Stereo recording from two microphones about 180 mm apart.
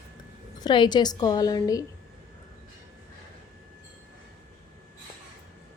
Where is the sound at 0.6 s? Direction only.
25° left (ahead or behind).